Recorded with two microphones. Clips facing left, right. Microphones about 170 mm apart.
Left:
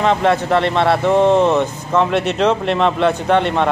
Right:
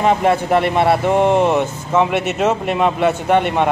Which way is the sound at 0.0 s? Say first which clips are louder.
Even; 10° right (ahead or behind).